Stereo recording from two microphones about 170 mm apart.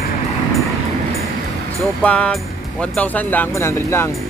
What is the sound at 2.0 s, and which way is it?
Speech, 5° left (ahead or behind).